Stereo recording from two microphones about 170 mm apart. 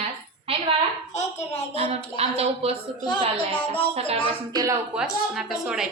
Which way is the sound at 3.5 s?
10° left (ahead or behind).